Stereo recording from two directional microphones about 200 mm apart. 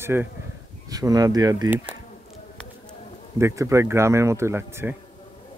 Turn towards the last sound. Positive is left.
turn(degrees=-10)  # may be behind; listen again after turning